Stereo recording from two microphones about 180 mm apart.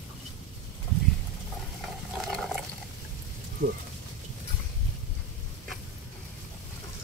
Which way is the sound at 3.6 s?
50° right (ahead or behind).